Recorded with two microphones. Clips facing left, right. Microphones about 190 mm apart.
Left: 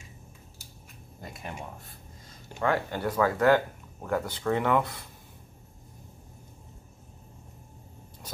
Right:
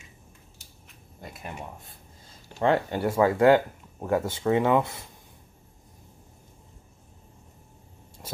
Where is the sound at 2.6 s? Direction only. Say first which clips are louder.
Right 4 dB; 25° right (ahead or behind).